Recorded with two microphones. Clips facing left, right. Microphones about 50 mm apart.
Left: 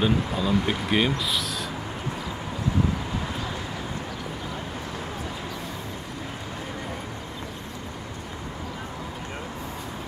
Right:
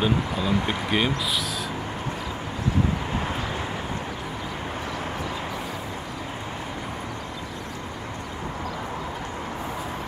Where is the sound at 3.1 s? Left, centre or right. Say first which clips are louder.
Right 3 dB; right.